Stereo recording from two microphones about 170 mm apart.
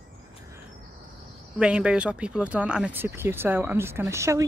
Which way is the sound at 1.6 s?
5° right (ahead or behind).